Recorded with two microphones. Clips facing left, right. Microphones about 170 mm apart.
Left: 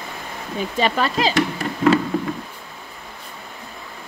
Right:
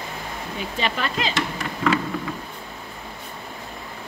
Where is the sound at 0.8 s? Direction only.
40° left (ahead or behind).